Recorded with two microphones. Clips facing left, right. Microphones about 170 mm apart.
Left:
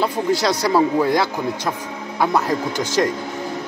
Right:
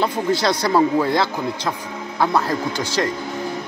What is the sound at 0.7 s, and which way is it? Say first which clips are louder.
Speech: left 1 dB; 10° left (ahead or behind).